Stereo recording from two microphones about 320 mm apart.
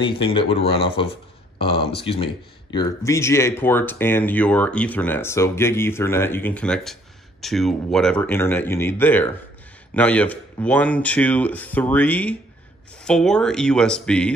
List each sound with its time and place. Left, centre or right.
0.0 s speech: centre